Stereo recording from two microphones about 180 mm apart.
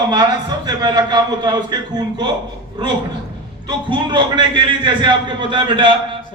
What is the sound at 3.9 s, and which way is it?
A man's voice, 25° right (ahead or behind).